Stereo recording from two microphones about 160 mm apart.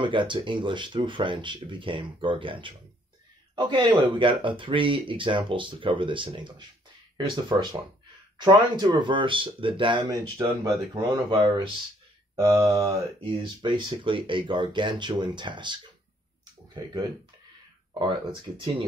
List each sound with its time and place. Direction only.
0.0 s speech: 30° right (ahead or behind)
11.2 s speech: 30° right (ahead or behind)
12.4 s speech: 20° right (ahead or behind)
13.2 s speech: 30° right (ahead or behind)
17.9 s speech: 30° right (ahead or behind)